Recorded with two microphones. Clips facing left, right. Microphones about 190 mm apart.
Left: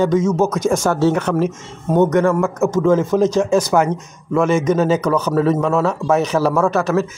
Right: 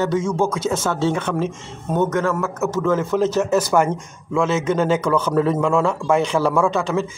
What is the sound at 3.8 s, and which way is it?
Speech, 10° right (ahead or behind).